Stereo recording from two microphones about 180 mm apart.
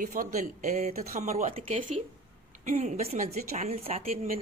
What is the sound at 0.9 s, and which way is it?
Speech, 55° right (ahead or behind).